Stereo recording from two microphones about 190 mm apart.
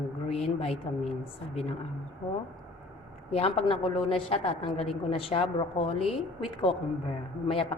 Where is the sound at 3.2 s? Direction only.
30° left (ahead or behind).